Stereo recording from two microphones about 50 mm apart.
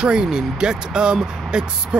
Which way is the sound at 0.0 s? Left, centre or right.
Centre.